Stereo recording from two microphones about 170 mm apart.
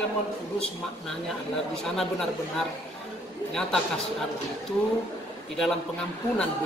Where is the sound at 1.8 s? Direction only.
5° left (ahead or behind).